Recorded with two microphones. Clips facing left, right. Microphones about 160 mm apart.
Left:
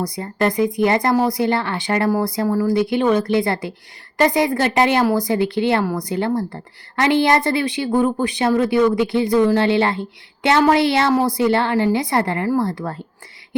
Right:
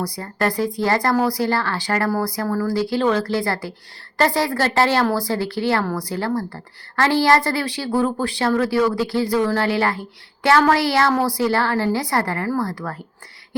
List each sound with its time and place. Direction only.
0.0 s a woman's voice: 20° left (ahead or behind)